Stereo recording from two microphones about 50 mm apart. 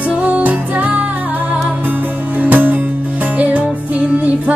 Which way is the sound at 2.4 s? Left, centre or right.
Right.